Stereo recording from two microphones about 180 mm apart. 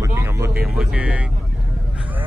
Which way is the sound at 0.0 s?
15° right (ahead or behind).